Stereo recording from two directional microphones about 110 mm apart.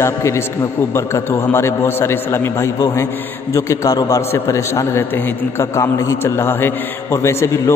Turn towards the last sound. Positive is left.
turn(degrees=25)  # may be behind; listen again after turning